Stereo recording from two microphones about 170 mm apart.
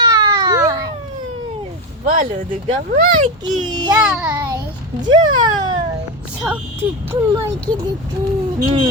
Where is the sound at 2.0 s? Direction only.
55° right (ahead or behind).